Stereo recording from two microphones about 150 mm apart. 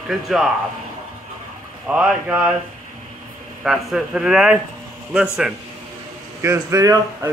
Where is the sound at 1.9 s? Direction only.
5° right (ahead or behind).